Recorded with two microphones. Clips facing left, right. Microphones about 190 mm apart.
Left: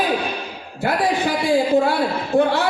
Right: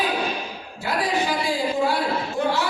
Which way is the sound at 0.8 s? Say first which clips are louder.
Left 4 dB; 55° left (ahead or behind).